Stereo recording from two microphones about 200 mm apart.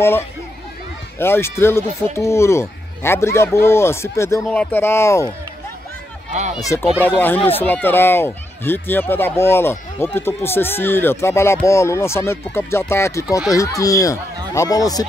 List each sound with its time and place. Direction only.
1.2 s speech: 10° left (ahead or behind)
6.6 s speech: 15° left (ahead or behind)